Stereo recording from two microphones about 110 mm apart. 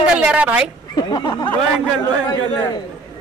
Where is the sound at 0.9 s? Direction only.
40° left (ahead or behind).